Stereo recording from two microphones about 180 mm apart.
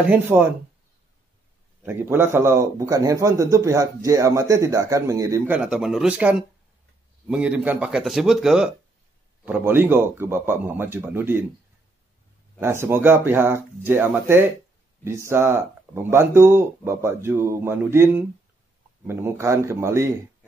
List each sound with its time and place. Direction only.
0.1 s a man's voice: 10° right (ahead or behind)
1.8 s a man's voice: 10° right (ahead or behind)
5.6 s a man's voice: 5° right (ahead or behind)
12.5 s a man's voice: 15° right (ahead or behind)